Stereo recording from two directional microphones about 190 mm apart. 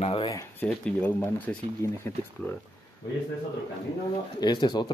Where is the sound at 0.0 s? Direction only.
30° left (ahead or behind).